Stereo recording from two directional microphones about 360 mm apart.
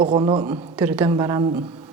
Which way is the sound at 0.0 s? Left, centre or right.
Centre.